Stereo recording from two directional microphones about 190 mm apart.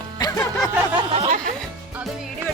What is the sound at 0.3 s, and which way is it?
Music, centre (ahead or behind).